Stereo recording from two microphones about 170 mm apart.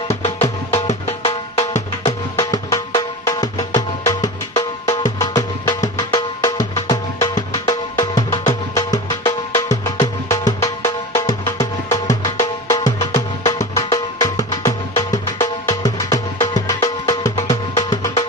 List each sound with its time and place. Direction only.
0.1 s music: 40° left (ahead or behind)
2.5 s music: 20° left (ahead or behind)